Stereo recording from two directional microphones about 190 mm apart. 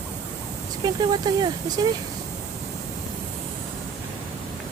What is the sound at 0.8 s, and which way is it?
Speech, 20° right (ahead or behind).